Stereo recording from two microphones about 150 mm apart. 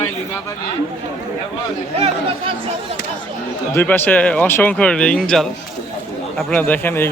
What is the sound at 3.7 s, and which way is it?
A man's voice, 15° left (ahead or behind).